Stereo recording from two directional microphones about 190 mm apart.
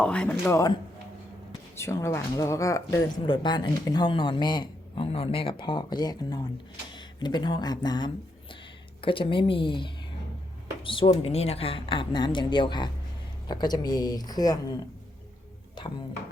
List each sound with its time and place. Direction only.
0.0 s speech: 5° left (ahead or behind)
1.8 s speech: 15° left (ahead or behind)
15.8 s speech: 25° left (ahead or behind)